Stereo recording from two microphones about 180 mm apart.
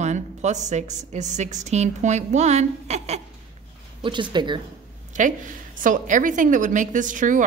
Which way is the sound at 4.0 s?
25° right (ahead or behind).